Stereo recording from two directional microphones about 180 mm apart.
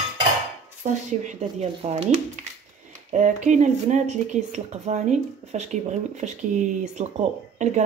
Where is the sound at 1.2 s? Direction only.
35° right (ahead or behind).